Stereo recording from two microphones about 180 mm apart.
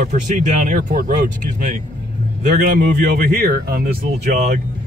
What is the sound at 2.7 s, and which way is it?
Speech, 50° right (ahead or behind).